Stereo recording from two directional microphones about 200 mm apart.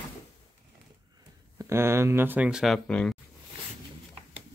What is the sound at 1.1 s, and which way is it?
Speech, 15° right (ahead or behind).